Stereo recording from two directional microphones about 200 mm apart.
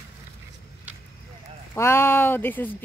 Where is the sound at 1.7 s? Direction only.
10° left (ahead or behind).